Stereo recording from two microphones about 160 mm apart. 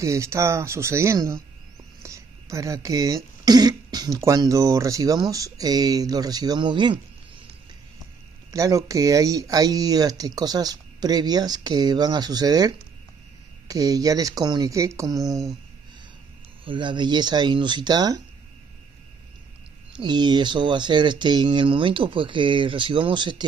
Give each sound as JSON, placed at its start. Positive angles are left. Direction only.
{"t": 0.0, "sound": "speech", "side_deg": -20}
{"t": 2.0, "sound": "a sound", "side_deg": -20}
{"t": 3.4, "sound": "speech", "side_deg": -25}
{"t": 8.5, "sound": "speech", "side_deg": -20}
{"t": 16.6, "sound": "speech", "side_deg": -30}
{"t": 20.0, "sound": "speech", "side_deg": -25}